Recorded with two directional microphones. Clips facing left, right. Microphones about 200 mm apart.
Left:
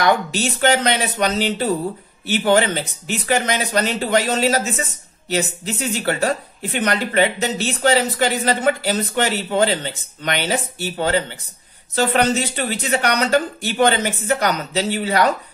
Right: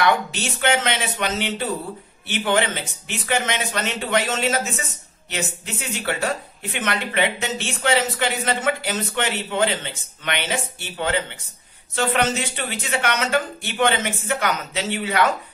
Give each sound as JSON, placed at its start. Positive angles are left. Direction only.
{"t": 0.0, "sound": "speech", "side_deg": 40}